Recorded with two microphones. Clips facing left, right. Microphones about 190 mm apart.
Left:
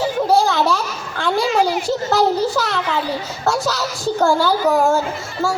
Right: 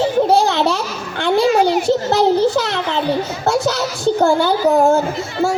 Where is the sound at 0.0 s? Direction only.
25° right (ahead or behind).